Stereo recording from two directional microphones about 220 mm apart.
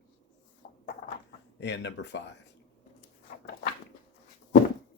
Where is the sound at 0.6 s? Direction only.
40° left (ahead or behind).